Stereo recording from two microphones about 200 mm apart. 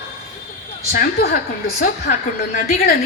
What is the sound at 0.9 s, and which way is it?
A woman's voice, 45° left (ahead or behind).